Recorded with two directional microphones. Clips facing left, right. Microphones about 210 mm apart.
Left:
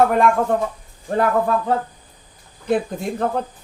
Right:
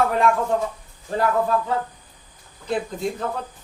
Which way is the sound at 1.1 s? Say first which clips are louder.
Left 3 dB; 55° left (ahead or behind).